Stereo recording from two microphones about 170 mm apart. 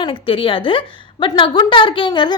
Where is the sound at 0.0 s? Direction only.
30° left (ahead or behind).